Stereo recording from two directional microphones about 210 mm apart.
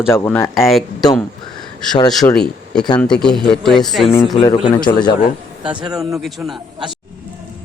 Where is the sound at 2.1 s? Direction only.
Centre (ahead or behind).